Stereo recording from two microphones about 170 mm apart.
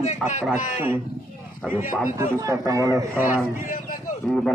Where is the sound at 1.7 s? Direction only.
10° right (ahead or behind).